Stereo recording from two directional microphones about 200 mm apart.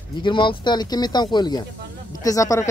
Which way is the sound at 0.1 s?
25° left (ahead or behind).